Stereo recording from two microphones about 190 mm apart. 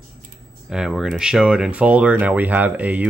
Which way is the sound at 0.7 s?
5° right (ahead or behind).